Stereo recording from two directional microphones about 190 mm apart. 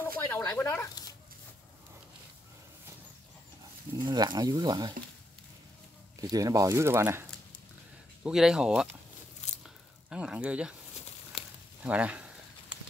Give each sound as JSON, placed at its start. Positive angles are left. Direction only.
{"t": 0.2, "sound": "a sound", "side_deg": 15}
{"t": 4.0, "sound": "speech", "side_deg": -25}
{"t": 6.2, "sound": "speech", "side_deg": -20}
{"t": 8.2, "sound": "speech", "side_deg": -5}
{"t": 9.4, "sound": "biting", "side_deg": 35}
{"t": 10.0, "sound": "speech", "side_deg": -5}
{"t": 11.3, "sound": "sizzle", "side_deg": 30}
{"t": 11.8, "sound": "a sound", "side_deg": -5}